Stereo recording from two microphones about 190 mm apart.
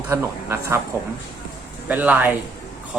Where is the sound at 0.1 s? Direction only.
15° right (ahead or behind).